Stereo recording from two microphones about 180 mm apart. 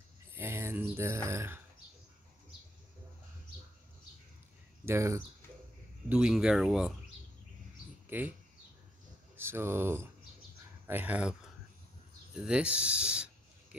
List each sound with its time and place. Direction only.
0.3 s speech: 15° right (ahead or behind)
4.8 s speech: 15° right (ahead or behind)
6.0 s speech: 5° right (ahead or behind)
8.1 s speech: 10° right (ahead or behind)
9.4 s speech: 15° right (ahead or behind)
12.4 s speech: 5° right (ahead or behind)